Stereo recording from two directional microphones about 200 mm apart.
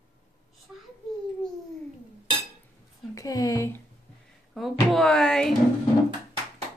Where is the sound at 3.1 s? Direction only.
15° left (ahead or behind).